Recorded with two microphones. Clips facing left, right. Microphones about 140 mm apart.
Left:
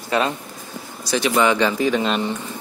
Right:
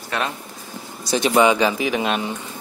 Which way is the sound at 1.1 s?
20° right (ahead or behind).